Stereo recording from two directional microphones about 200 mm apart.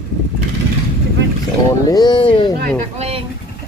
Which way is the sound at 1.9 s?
20° left (ahead or behind).